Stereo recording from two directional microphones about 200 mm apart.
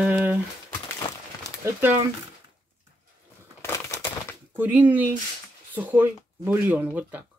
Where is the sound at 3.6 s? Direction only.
10° left (ahead or behind).